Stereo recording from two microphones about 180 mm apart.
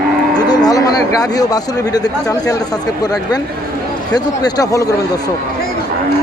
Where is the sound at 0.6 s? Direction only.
20° left (ahead or behind).